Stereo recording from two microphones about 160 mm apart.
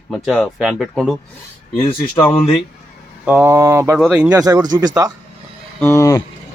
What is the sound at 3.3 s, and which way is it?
Speech, 10° right (ahead or behind).